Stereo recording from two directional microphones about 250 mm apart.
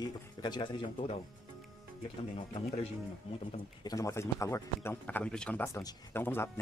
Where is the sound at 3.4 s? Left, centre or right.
Centre.